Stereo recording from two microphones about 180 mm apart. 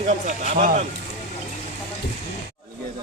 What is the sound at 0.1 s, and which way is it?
Speech, 45° right (ahead or behind).